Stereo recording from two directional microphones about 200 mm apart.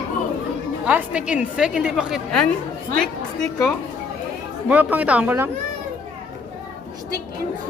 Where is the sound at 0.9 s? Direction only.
5° right (ahead or behind).